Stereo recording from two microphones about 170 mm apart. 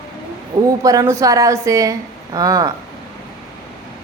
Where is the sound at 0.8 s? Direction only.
20° right (ahead or behind).